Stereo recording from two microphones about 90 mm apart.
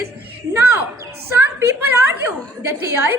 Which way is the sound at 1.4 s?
25° right (ahead or behind).